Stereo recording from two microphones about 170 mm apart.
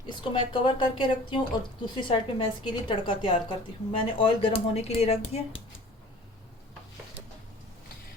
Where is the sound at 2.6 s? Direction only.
30° left (ahead or behind).